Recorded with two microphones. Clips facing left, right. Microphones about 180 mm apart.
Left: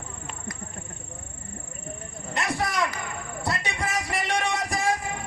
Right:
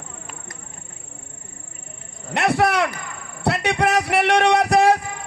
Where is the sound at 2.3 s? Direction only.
65° right (ahead or behind).